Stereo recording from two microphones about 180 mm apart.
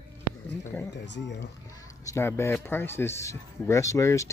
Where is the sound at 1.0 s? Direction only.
75° left (ahead or behind).